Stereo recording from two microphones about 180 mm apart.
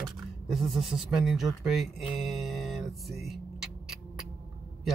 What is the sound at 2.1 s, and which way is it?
Mantra, centre (ahead or behind).